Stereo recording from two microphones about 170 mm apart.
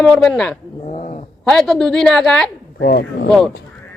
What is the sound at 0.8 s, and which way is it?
Cat, 40° left (ahead or behind).